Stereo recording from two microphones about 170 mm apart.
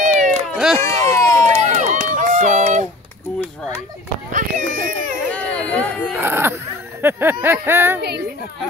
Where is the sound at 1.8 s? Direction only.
50° right (ahead or behind).